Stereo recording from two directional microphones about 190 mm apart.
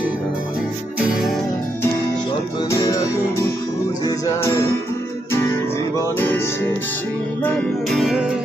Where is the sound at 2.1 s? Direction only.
25° left (ahead or behind).